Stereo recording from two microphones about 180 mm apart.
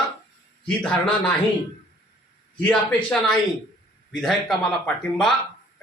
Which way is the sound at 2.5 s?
10° left (ahead or behind).